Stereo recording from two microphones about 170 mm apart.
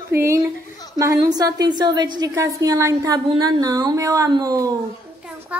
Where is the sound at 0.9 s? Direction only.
20° right (ahead or behind).